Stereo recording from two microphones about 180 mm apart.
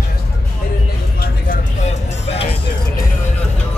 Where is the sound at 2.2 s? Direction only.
35° left (ahead or behind).